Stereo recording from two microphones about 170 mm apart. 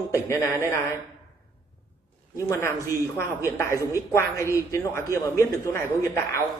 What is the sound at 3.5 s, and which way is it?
A man's voice, 15° left (ahead or behind).